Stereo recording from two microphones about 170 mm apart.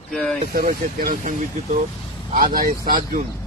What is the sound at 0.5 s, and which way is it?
Speech, 55° right (ahead or behind).